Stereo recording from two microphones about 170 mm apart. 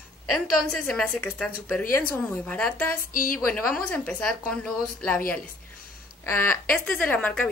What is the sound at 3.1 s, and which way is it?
Speech, 55° left (ahead or behind).